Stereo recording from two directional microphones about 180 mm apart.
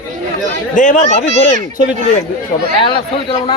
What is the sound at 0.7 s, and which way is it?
Speech, 45° left (ahead or behind).